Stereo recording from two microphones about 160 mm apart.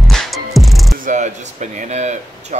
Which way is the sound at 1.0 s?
50° right (ahead or behind).